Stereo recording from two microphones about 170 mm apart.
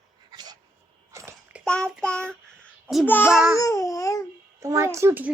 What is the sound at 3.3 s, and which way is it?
Speech, 5° right (ahead or behind).